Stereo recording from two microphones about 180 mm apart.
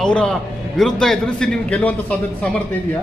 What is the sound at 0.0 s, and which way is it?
A man's voice, 5° left (ahead or behind).